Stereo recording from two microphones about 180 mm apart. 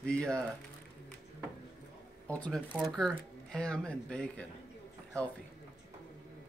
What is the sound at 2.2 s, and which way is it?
Speech, 5° left (ahead or behind).